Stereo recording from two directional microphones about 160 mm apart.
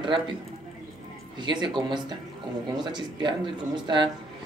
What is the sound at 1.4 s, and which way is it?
A woman's voice, 30° right (ahead or behind).